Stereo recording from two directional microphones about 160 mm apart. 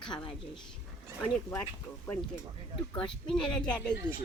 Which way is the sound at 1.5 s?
15° left (ahead or behind).